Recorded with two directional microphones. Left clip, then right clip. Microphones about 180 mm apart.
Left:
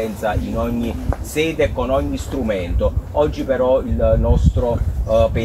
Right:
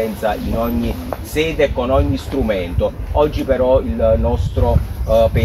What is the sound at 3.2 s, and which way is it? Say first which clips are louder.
Speech: right 2 dB; centre (ahead or behind).